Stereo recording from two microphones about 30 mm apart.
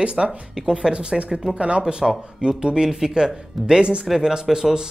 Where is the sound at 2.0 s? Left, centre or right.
Right.